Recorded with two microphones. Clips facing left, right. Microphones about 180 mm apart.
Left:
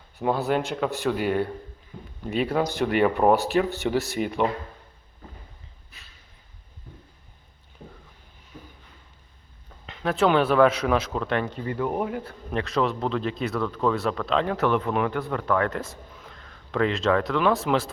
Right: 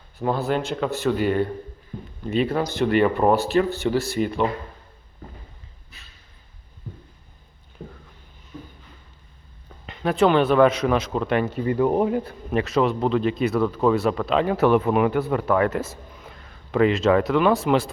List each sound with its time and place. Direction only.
0.3 s speech: 15° left (ahead or behind)
9.8 s speech: centre (ahead or behind)
11.6 s speech: 20° right (ahead or behind)
12.5 s speech: 5° right (ahead or behind)